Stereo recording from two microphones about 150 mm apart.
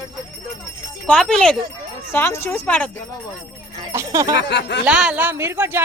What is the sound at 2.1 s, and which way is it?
Speech, 15° left (ahead or behind).